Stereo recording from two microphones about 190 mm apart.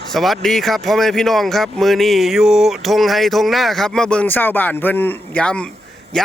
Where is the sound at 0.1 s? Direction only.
Centre (ahead or behind).